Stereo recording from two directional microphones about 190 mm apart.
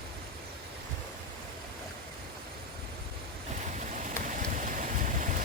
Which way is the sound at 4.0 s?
40° right (ahead or behind).